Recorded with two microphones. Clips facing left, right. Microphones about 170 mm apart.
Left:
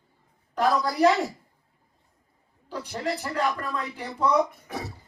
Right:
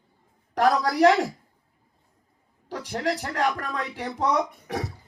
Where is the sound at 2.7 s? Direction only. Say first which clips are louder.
Right 2 dB; 85° right.